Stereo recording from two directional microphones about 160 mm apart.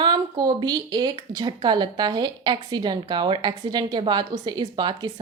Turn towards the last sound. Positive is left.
turn(degrees=-30)  # may be behind; listen again after turning